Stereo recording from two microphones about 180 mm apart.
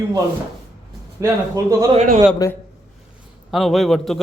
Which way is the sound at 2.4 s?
20° left (ahead or behind).